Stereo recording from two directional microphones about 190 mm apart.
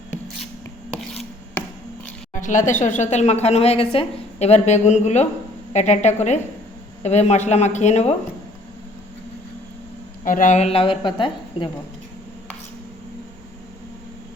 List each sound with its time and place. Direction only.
2.3 s a woman's voice: 40° left (ahead or behind)
10.2 s a woman's voice: 45° left (ahead or behind); by 11.7 s 25° left (ahead or behind)